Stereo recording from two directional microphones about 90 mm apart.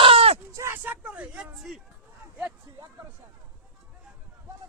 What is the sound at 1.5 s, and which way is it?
Speech, centre (ahead or behind).